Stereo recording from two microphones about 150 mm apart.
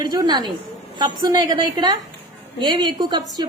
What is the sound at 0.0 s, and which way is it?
A woman's voice, 25° right (ahead or behind).